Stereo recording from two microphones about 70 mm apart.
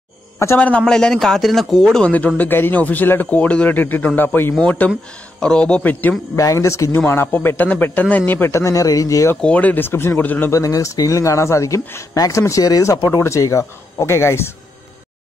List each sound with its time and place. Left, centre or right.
0.6 s speech: left
0.8 s speech: centre
2.0 s speech: centre
6.3 s speech: left
7.1 s speech: left
8.5 s speech: left
9.4 s speech: centre
9.8 s speech: left
10.5 s speech: left
13.1 s speech: left